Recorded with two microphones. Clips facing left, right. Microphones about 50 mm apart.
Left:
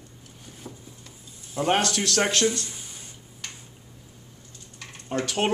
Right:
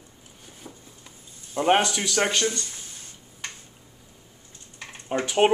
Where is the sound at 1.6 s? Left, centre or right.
Centre.